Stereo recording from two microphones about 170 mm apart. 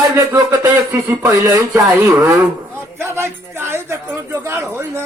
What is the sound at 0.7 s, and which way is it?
A man's voice, 15° right (ahead or behind).